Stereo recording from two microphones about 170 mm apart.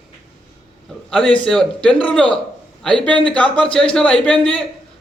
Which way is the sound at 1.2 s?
30° left (ahead or behind).